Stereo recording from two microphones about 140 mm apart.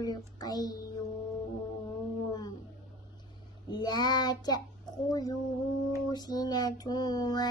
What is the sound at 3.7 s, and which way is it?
Child singing, 30° left (ahead or behind).